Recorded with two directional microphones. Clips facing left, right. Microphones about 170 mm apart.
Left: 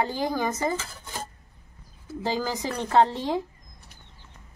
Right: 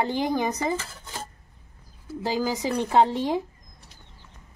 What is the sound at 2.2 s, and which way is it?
A woman's voice, 10° right (ahead or behind).